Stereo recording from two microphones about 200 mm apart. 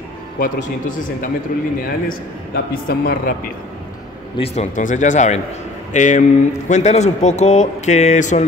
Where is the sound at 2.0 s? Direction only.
45° left (ahead or behind).